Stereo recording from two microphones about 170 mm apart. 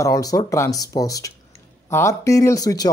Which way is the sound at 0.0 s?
20° left (ahead or behind).